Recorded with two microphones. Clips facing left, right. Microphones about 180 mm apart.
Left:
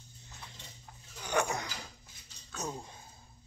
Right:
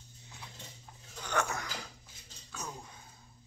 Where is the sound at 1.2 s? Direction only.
15° left (ahead or behind).